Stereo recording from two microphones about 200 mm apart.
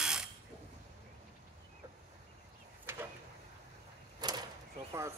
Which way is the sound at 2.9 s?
10° right (ahead or behind).